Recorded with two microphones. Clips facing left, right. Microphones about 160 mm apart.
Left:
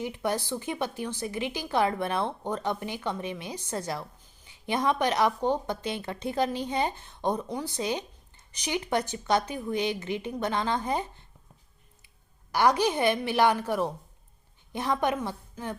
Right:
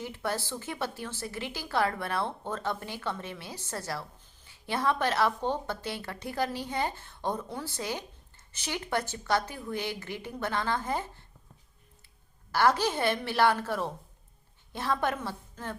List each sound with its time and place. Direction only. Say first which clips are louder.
0.0 s a woman's voice: left 4 dB; 15° left (ahead or behind)
12.5 s a woman's voice: left 2 dB; 15° left (ahead or behind)